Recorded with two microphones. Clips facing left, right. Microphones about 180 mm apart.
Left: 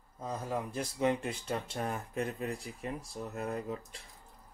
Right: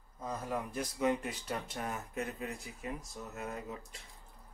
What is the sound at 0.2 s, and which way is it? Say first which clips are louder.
Speech: left 2 dB; 30° left (ahead or behind).